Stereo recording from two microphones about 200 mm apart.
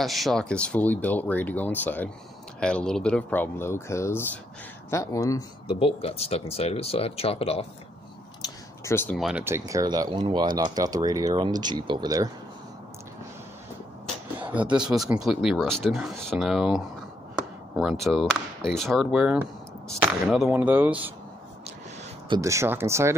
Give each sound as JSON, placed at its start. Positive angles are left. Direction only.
{"t": 0.0, "sound": "speech", "side_deg": 0}
{"t": 5.7, "sound": "speech", "side_deg": 30}
{"t": 8.8, "sound": "speech", "side_deg": 10}
{"t": 9.1, "sound": "speech", "side_deg": -5}
{"t": 14.5, "sound": "speech", "side_deg": -5}
{"t": 22.3, "sound": "speech", "side_deg": -15}